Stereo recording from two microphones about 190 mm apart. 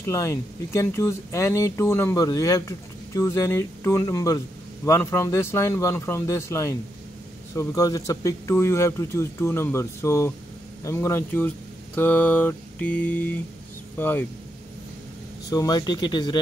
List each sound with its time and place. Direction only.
0.0 s speech: 15° left (ahead or behind)
15.5 s speech: 20° left (ahead or behind)